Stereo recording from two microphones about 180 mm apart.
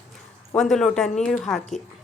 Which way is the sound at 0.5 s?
Centre (ahead or behind).